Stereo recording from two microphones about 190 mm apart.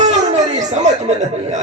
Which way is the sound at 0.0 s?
35° right (ahead or behind).